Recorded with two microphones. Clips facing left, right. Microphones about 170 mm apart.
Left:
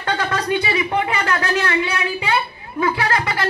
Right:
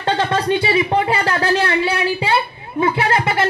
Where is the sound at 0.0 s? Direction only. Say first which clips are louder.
Right 4 dB; 25° right (ahead or behind).